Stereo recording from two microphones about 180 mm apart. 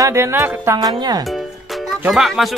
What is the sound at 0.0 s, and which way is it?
Speech, 15° right (ahead or behind).